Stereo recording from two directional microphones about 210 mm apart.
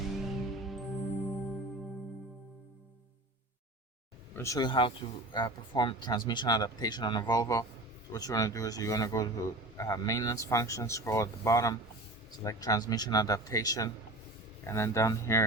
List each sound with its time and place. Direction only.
0.1 s music: centre (ahead or behind)
4.4 s speech: 15° left (ahead or behind)